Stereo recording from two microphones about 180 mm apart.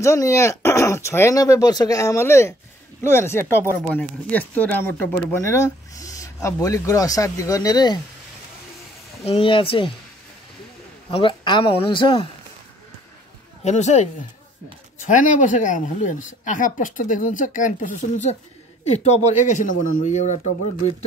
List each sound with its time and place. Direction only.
0.0 s speech: 15° left (ahead or behind)
9.2 s speech: 30° left (ahead or behind)
11.1 s speech: 25° left (ahead or behind)
13.7 s speech: 40° left (ahead or behind)
15.0 s speech: 45° left (ahead or behind)